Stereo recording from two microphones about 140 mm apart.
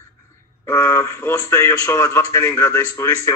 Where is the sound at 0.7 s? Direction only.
20° left (ahead or behind).